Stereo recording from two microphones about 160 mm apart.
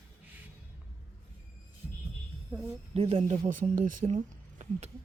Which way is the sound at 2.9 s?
40° right (ahead or behind).